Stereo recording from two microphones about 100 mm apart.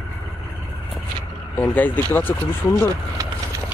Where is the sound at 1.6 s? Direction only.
20° left (ahead or behind).